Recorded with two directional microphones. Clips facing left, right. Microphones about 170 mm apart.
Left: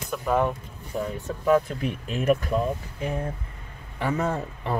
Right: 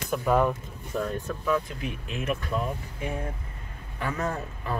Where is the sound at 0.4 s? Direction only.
20° left (ahead or behind).